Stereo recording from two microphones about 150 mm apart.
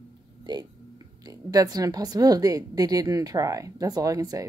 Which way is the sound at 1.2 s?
25° right (ahead or behind).